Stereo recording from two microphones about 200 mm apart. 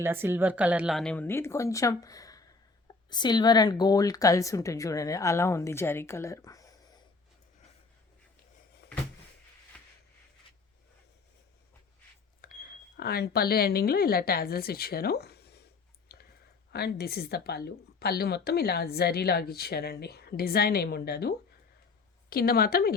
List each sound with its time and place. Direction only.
0.0 s speech: 10° right (ahead or behind); by 6.7 s 15° left (ahead or behind)
12.4 s speech: 45° left (ahead or behind)
16.1 s clicking: 50° left (ahead or behind)
16.7 s a woman's voice: 50° left (ahead or behind)